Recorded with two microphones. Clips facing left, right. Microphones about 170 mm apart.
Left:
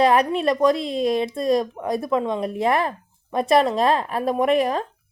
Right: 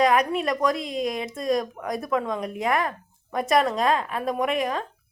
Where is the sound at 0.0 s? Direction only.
30° left (ahead or behind).